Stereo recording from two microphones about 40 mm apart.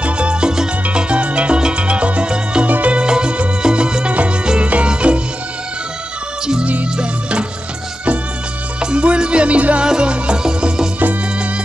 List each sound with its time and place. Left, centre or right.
0.0 s music: right
2.6 s music: right
3.0 s music: right
6.6 s music: right
8.9 s music: right
9.8 s music: right